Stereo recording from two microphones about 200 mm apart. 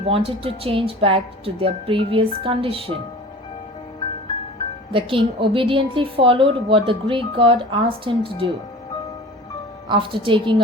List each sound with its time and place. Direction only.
0.0 s a woman's voice: 30° right (ahead or behind)
4.9 s a woman's voice: 25° right (ahead or behind)
9.9 s a woman's voice: 25° right (ahead or behind)